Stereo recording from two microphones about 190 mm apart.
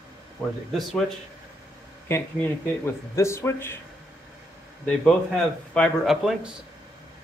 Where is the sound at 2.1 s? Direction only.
10° left (ahead or behind).